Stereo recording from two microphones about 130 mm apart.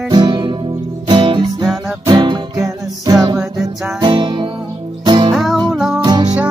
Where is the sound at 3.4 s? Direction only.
5° right (ahead or behind).